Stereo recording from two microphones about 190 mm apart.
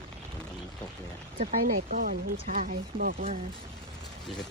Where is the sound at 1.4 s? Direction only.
45° right (ahead or behind).